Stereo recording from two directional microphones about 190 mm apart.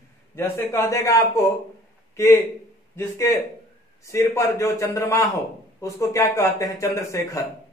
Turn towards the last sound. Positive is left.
turn(degrees=15)  # may be behind; listen again after turning